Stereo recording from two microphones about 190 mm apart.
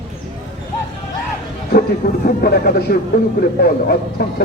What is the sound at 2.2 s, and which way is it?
A man's voice, 55° left (ahead or behind).